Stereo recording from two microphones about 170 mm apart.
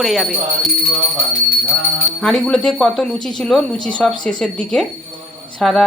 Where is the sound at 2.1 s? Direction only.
Centre (ahead or behind).